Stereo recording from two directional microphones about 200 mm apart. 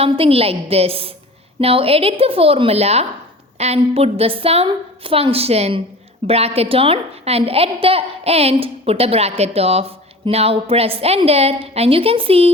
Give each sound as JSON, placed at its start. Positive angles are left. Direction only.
{"t": 0.0, "sound": "a woman's voice", "side_deg": -30}